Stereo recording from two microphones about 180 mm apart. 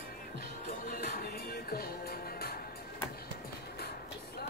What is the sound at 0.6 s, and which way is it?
Music, 55° left (ahead or behind).